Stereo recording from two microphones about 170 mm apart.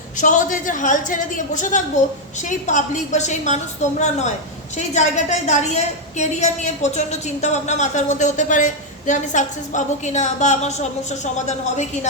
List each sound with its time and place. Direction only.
0.2 s a woman's voice: 50° left (ahead or behind)